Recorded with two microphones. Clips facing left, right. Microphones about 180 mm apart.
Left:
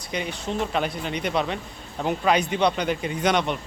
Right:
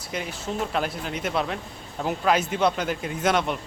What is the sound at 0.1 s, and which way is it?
Speech, 5° right (ahead or behind).